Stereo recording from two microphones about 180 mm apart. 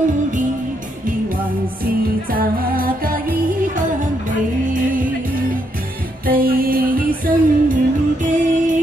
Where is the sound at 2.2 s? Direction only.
55° right (ahead or behind).